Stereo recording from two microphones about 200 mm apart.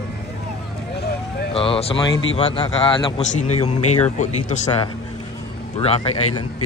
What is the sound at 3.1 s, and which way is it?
Speech, 35° left (ahead or behind).